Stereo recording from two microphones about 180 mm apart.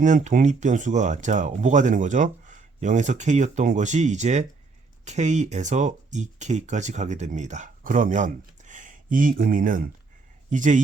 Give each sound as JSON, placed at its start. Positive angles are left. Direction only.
{"t": 0.0, "sound": "speech", "side_deg": -45}